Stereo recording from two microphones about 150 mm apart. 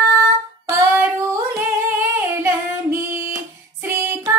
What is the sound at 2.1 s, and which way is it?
Child singing, 15° right (ahead or behind).